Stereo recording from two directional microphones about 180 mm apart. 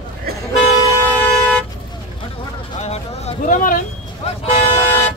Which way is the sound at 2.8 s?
35° left (ahead or behind).